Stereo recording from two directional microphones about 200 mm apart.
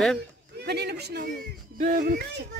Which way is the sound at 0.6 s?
55° right (ahead or behind).